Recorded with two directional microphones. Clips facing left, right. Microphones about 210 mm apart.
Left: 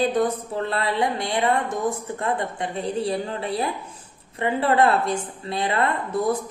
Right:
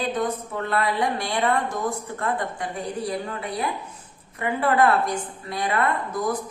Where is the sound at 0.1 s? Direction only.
30° left (ahead or behind).